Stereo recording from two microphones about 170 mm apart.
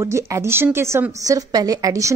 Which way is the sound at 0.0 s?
15° right (ahead or behind).